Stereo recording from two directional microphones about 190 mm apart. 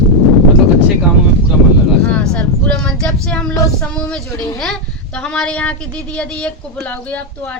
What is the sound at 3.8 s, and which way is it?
A woman's voice, 5° left (ahead or behind).